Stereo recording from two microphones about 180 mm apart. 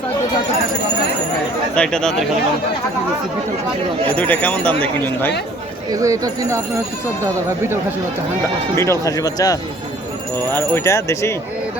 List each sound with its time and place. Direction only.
1.7 s speech: 5° left (ahead or behind)
4.1 s speech: 10° left (ahead or behind)
5.9 s speech: 20° right (ahead or behind)
8.7 s speech: 15° left (ahead or behind)